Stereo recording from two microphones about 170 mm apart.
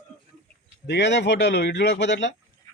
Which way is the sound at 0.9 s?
90° left.